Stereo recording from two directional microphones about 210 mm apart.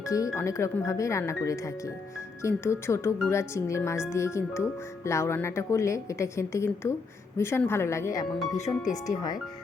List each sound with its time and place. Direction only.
0.0 s a woman's voice: 15° left (ahead or behind)